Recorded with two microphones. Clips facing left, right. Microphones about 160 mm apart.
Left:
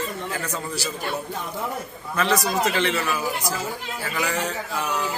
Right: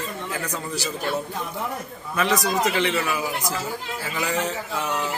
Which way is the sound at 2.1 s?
15° right (ahead or behind).